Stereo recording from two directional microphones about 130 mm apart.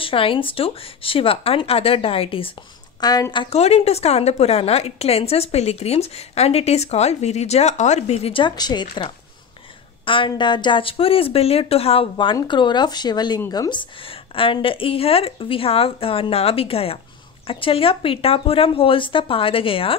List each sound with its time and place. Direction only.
0.0 s a woman's voice: 45° left (ahead or behind)
3.0 s speech: 30° left (ahead or behind)
3.4 s a woman's voice: 55° left (ahead or behind)